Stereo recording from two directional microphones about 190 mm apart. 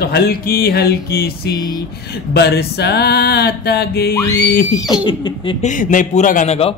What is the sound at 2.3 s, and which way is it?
A man's voice, 60° left (ahead or behind).